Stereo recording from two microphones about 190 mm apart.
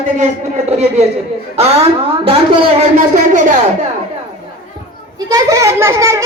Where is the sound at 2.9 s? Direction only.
40° right (ahead or behind).